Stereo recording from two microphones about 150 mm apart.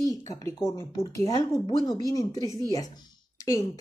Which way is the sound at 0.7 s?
20° left (ahead or behind).